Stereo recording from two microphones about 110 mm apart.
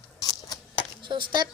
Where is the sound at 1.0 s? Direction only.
45° right (ahead or behind).